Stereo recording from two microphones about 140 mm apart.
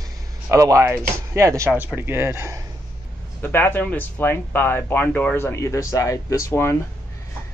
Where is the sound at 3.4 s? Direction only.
15° left (ahead or behind).